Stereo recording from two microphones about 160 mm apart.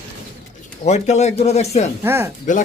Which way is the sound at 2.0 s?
15° right (ahead or behind).